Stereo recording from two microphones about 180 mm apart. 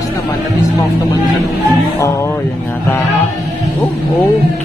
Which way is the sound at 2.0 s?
15° left (ahead or behind).